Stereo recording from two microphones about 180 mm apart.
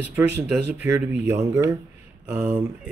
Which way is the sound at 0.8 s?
10° right (ahead or behind).